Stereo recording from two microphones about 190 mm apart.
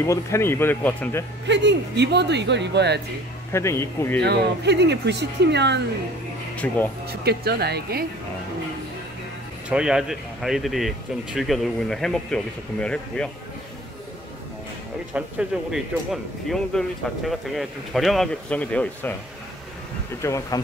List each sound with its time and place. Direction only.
0.0 s speech: 15° left (ahead or behind)
1.5 s speech: 65° right (ahead or behind)
3.5 s speech: 15° left (ahead or behind)
4.2 s speech: 60° right (ahead or behind)
6.5 s speech: 5° left (ahead or behind)
7.1 s speech: 55° right (ahead or behind)
9.7 s speech: 5° right (ahead or behind)
15.1 s speech: 5° right (ahead or behind)
20.2 s speech: 15° left (ahead or behind)